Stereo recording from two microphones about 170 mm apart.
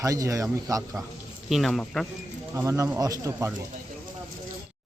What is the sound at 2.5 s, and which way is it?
Speech, 15° right (ahead or behind).